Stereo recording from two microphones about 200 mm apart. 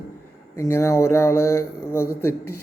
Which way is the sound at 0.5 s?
15° left (ahead or behind).